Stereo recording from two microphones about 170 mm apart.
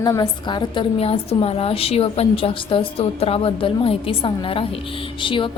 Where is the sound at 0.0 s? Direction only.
20° left (ahead or behind).